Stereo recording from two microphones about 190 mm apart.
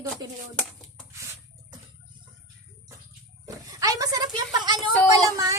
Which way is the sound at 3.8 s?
20° right (ahead or behind).